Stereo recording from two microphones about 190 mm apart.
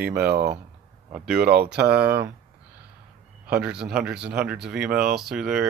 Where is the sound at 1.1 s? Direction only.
5° right (ahead or behind).